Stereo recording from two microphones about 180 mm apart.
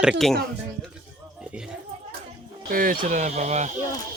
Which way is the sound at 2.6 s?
50° right (ahead or behind).